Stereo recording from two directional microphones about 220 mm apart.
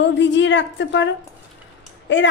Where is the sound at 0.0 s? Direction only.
55° left (ahead or behind).